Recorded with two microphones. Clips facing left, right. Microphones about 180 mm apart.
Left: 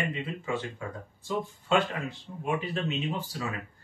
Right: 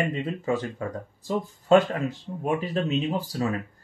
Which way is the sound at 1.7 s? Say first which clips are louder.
Right 8 dB; 40° right (ahead or behind).